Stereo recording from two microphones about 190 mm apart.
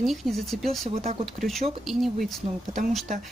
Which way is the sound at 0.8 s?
30° right (ahead or behind).